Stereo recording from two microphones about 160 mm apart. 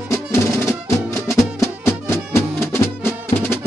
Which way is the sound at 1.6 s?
15° left (ahead or behind).